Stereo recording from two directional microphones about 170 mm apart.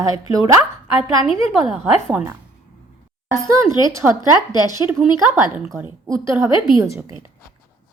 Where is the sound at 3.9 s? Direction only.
20° right (ahead or behind).